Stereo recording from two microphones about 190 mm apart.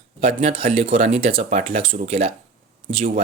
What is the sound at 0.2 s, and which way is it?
Speech, 30° right (ahead or behind).